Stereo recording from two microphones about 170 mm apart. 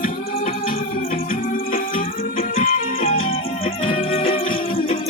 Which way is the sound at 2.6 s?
40° left (ahead or behind).